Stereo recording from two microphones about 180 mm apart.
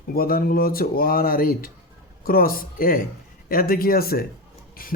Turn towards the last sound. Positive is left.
turn(degrees=55)  # may be behind; listen again after turning